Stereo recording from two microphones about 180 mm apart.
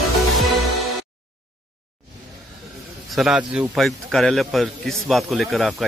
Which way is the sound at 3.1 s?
5° right (ahead or behind).